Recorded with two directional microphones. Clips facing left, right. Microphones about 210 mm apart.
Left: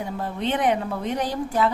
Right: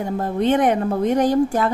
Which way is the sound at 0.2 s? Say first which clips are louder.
Right 7 dB; 45° right (ahead or behind).